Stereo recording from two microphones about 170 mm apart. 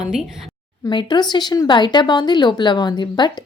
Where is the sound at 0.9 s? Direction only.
25° left (ahead or behind).